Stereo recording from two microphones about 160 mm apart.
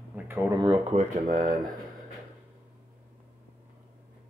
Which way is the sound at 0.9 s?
50° right (ahead or behind).